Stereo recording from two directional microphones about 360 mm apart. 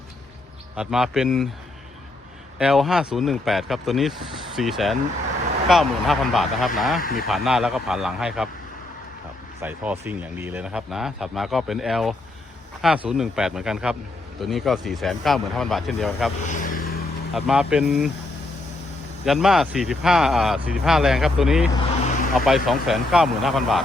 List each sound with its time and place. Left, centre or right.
0.8 s speech: centre
2.6 s speech: centre
7.0 s speech: left
7.3 s speech: centre
9.6 s speech: centre
16.5 s vehicle: left
17.3 s speech: centre
19.2 s speech: centre